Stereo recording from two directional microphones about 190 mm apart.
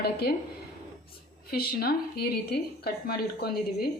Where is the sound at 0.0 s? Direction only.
55° left (ahead or behind).